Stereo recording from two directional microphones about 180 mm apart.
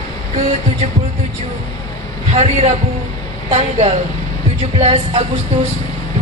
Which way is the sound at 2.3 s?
35° right (ahead or behind).